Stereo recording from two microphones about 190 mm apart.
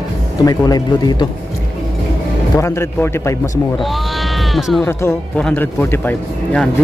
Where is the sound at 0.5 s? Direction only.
20° left (ahead or behind).